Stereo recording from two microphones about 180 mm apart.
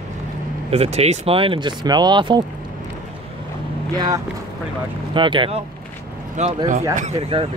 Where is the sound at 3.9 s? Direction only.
20° right (ahead or behind).